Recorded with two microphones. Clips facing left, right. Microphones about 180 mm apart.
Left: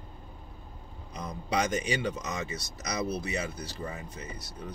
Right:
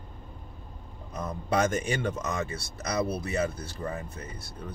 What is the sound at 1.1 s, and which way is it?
Speech, 50° right (ahead or behind).